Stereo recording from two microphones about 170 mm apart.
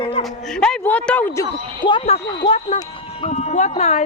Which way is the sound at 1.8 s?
30° left (ahead or behind).